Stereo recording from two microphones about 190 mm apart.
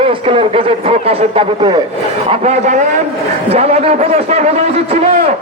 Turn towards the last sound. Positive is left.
turn(degrees=-35)  # may be behind; listen again after turning